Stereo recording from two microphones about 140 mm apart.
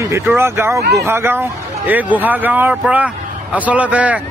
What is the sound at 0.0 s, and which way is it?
A man's voice, 20° right (ahead or behind).